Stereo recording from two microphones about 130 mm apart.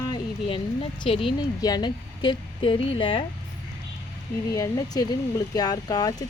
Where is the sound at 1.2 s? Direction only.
30° left (ahead or behind).